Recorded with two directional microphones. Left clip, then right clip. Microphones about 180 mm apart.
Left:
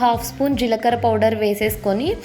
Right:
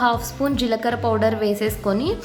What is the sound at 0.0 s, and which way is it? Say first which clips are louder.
A woman's voice: left 2 dB; 10° left (ahead or behind).